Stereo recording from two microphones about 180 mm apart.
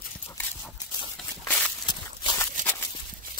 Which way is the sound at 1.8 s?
20° left (ahead or behind).